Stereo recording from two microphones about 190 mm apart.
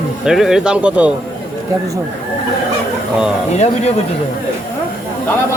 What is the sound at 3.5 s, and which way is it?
Speech, 35° left (ahead or behind).